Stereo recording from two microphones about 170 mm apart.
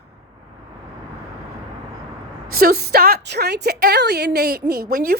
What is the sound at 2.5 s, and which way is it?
A woman's voice, 65° right (ahead or behind).